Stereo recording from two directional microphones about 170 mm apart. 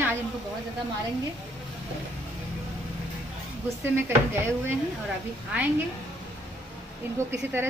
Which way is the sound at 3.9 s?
15° right (ahead or behind).